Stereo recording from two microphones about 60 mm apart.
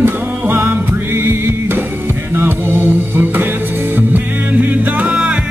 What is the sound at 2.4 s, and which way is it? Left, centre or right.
Mantra, right.